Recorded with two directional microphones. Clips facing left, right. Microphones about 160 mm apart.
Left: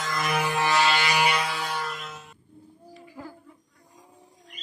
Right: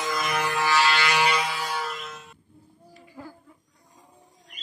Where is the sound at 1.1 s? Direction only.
10° left (ahead or behind).